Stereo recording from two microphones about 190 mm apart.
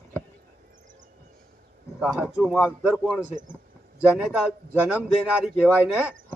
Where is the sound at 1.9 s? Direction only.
5° right (ahead or behind).